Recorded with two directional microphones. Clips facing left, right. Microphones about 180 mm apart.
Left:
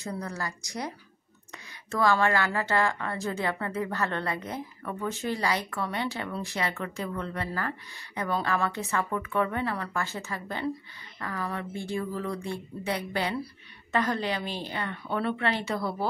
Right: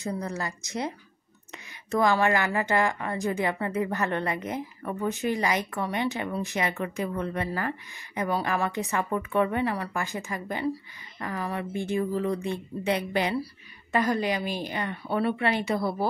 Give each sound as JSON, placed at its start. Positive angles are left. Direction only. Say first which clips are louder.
{"t": 0.0, "sound": "a woman's voice", "louder": "right 3 dB", "side_deg": -20}